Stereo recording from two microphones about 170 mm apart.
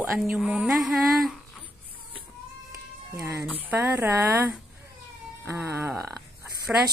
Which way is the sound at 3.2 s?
15° right (ahead or behind).